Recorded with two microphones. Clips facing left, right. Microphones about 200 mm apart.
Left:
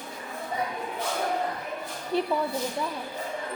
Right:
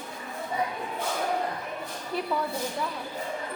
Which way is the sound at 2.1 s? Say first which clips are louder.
Left 5 dB; 25° left (ahead or behind).